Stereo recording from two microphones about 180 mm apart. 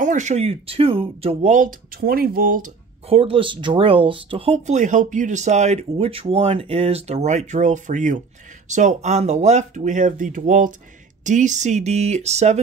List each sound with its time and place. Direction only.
0.0 s speech: 45° right (ahead or behind)
3.1 s speech: 30° right (ahead or behind)